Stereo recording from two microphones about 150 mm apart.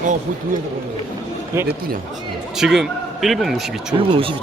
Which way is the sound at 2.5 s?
5° right (ahead or behind).